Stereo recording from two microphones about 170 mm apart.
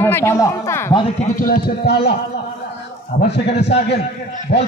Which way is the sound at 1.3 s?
60° left (ahead or behind).